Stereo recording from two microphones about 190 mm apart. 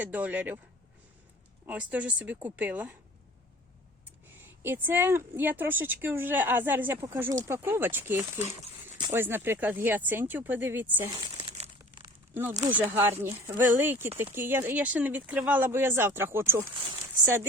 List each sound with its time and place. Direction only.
0.0 s speech: 10° right (ahead or behind)
1.6 s speech: 10° right (ahead or behind)
4.4 s speech: 10° right (ahead or behind)
8.5 s a sound: 25° right (ahead or behind)
9.1 s speech: 10° right (ahead or behind)
11.1 s crumpling: 25° right (ahead or behind)
11.8 s crumpling: 20° right (ahead or behind)
12.3 s speech: 10° right (ahead or behind)